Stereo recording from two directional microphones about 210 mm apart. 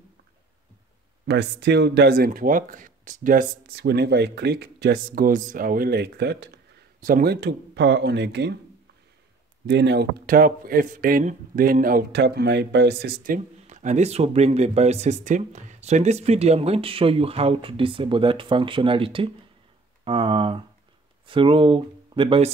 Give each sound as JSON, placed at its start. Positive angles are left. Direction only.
{"t": 1.2, "sound": "speech", "side_deg": -55}
{"t": 9.7, "sound": "speech", "side_deg": -55}